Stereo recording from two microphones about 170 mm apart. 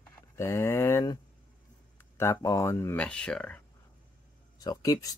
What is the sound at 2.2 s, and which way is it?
Speech, 15° left (ahead or behind).